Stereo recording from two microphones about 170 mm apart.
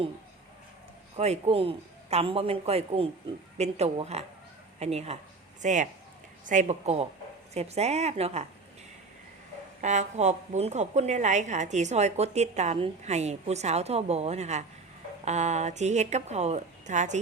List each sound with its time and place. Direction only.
1.1 s a woman's voice: 40° right (ahead or behind)
9.8 s a woman's voice: 45° right (ahead or behind)